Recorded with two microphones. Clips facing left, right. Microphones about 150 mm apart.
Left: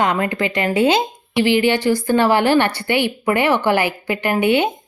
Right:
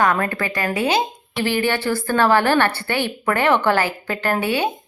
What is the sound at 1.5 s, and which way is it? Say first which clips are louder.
A woman's voice: left 4 dB; 15° left (ahead or behind).